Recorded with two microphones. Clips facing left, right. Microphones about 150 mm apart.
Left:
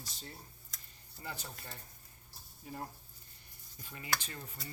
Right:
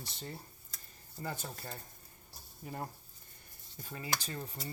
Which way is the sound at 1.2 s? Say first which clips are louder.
Right 5 dB; 45° right (ahead or behind).